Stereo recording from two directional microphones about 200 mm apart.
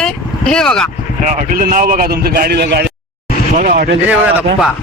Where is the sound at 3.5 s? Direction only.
40° right (ahead or behind).